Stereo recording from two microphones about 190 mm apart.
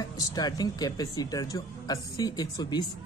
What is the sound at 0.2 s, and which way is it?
A woman's voice, 20° left (ahead or behind).